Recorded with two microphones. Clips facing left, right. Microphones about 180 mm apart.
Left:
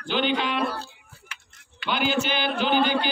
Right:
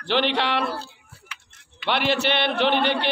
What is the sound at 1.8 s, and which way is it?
A man's voice, 75° right (ahead or behind).